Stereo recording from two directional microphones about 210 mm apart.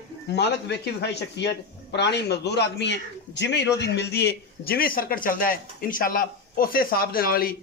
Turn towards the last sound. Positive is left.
turn(degrees=45)  # may be behind; listen again after turning